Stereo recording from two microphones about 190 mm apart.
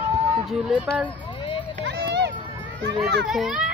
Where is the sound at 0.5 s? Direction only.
Centre (ahead or behind).